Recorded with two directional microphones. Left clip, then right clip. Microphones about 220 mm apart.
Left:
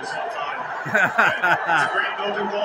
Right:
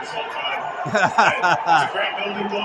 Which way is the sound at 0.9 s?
15° right (ahead or behind).